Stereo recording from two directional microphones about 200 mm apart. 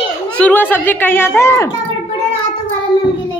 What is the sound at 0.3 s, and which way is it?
A woman's voice, 5° left (ahead or behind).